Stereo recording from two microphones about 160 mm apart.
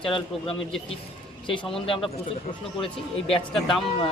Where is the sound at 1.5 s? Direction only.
35° left (ahead or behind).